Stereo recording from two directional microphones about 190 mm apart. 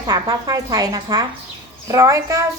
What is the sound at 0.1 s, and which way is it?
A woman's voice, 20° right (ahead or behind).